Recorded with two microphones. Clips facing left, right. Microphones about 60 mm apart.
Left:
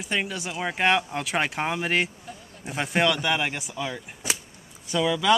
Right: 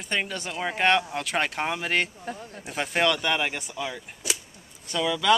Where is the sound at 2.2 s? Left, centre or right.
Right.